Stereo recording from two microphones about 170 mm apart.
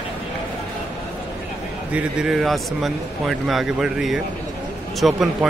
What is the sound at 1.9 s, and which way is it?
Speech, 5° right (ahead or behind).